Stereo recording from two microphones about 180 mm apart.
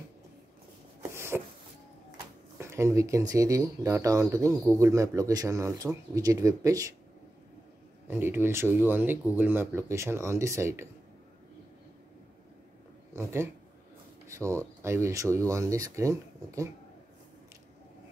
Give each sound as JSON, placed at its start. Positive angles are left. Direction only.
{"t": 1.1, "sound": "a sound", "side_deg": -15}
{"t": 2.6, "sound": "speech", "side_deg": -15}
{"t": 8.1, "sound": "speech", "side_deg": -10}
{"t": 13.1, "sound": "speech", "side_deg": -15}